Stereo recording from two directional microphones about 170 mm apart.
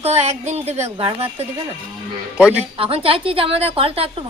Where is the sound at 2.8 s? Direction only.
35° right (ahead or behind).